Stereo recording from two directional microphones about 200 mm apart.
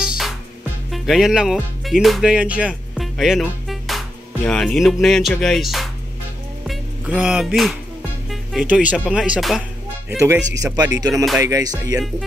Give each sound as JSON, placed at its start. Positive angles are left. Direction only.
{"t": 0.9, "sound": "speech", "side_deg": 0}
{"t": 6.6, "sound": "music", "side_deg": -5}
{"t": 8.3, "sound": "speech", "side_deg": -5}